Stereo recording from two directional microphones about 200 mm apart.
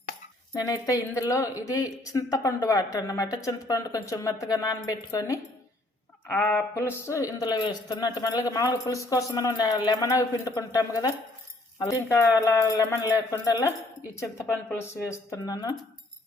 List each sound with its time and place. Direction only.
0.6 s speech: 15° left (ahead or behind)